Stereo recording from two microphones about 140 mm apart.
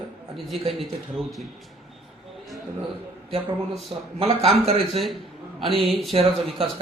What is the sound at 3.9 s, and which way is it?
Speech, 40° right (ahead or behind).